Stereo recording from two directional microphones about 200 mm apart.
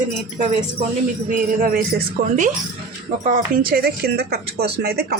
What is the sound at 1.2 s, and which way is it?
Speech, 45° right (ahead or behind).